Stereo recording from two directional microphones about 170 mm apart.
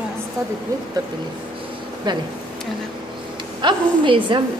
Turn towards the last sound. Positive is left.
turn(degrees=-30)  # may be behind; listen again after turning